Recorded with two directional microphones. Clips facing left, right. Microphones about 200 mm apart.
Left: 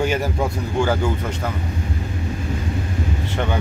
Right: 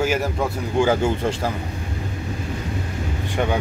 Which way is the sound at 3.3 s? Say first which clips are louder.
Right 3 dB; 15° right (ahead or behind).